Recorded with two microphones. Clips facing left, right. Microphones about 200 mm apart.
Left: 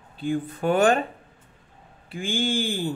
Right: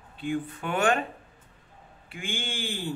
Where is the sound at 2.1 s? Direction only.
35° left (ahead or behind).